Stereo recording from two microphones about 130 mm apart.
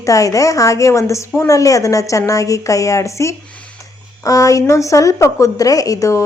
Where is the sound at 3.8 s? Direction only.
25° left (ahead or behind).